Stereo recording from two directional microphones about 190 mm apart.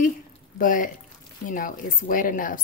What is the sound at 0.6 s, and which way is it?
Speech, 45° left (ahead or behind).